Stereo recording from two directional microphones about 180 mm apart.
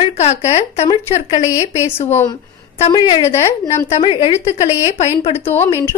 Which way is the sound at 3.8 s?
35° left (ahead or behind).